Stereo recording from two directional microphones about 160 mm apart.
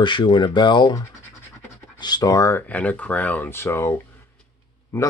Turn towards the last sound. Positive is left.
turn(degrees=15)  # may be behind; listen again after turning